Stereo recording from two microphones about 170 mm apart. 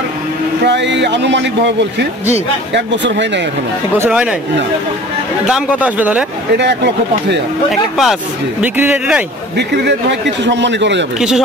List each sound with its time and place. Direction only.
0.7 s a man's voice: 90° right
4.0 s speech: 5° right (ahead or behind)
5.5 s speech: 10° right (ahead or behind)
6.6 s a man's voice: 90° right
7.7 s speech: centre (ahead or behind)
10.4 s a man's voice: 90° right
11.1 s speech: centre (ahead or behind)